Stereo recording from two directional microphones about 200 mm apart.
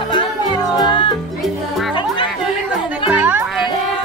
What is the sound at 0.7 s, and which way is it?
Music, 25° left (ahead or behind).